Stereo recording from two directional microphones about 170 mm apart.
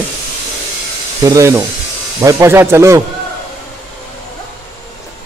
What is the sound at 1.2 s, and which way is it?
A man's voice, 20° right (ahead or behind).